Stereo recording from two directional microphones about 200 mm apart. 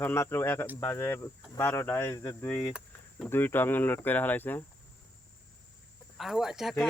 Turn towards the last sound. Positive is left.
turn(degrees=0)  # may be behind; listen again after turning